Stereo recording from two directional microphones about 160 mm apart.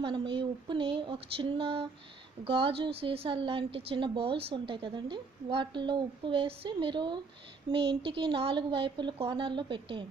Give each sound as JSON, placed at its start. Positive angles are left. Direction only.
{"t": 0.0, "sound": "a woman's voice", "side_deg": -30}